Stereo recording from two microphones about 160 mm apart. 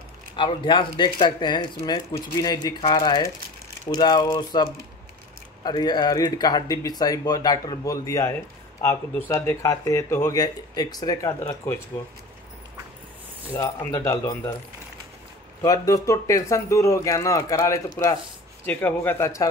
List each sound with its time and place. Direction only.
0.4 s speech: 30° left (ahead or behind)
13.5 s speech: 20° left (ahead or behind)
15.6 s a man's voice: 20° left (ahead or behind)